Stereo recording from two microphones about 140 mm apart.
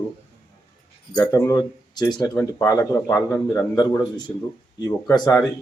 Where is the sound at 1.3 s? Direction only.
25° left (ahead or behind).